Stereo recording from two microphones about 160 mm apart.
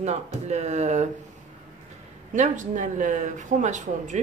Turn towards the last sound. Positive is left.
turn(degrees=-50)  # may be behind; listen again after turning